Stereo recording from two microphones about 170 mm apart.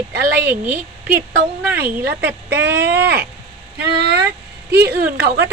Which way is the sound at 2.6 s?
90° right.